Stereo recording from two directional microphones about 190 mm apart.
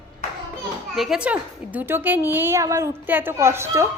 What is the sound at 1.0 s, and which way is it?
A woman's voice, 5° right (ahead or behind).